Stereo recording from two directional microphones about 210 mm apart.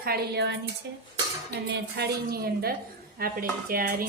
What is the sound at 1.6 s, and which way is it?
A woman's voice, 50° right (ahead or behind).